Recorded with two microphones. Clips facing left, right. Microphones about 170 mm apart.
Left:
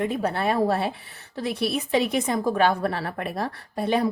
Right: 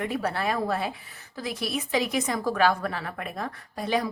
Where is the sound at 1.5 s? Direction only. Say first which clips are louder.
Left 6 dB; 60° left (ahead or behind).